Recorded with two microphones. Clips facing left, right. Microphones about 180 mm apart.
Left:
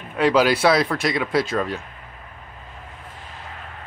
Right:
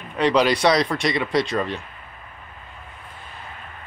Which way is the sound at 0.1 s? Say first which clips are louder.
Left 1 dB; 5° left (ahead or behind).